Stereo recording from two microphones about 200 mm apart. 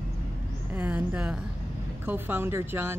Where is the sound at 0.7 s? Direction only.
10° right (ahead or behind).